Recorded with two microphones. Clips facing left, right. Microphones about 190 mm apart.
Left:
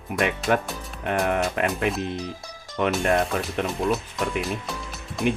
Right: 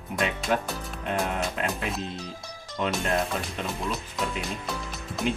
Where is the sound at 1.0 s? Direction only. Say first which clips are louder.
Left 5 dB; 60° left (ahead or behind).